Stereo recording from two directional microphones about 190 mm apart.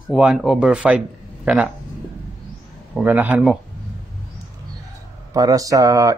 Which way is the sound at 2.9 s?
10° right (ahead or behind).